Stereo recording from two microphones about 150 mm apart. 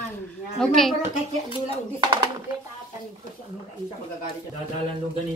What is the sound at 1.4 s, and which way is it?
Speech, 35° right (ahead or behind).